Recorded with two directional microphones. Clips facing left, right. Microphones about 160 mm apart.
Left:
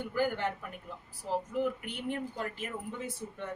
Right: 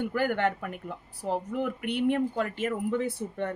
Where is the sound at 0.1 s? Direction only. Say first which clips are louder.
Right 4 dB; 65° right (ahead or behind).